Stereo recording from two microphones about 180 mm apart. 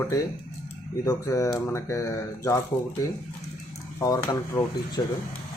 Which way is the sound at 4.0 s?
20° left (ahead or behind).